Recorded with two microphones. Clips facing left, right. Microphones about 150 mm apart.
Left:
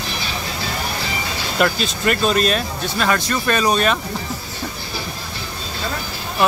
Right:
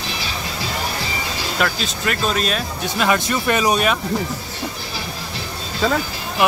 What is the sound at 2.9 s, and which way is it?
Speech, 20° right (ahead or behind).